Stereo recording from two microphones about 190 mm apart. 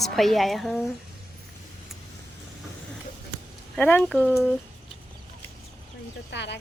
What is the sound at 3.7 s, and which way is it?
Speech, 5° left (ahead or behind).